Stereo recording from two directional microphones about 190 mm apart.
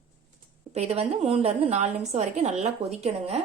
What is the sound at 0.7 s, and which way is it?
Speech, 30° right (ahead or behind).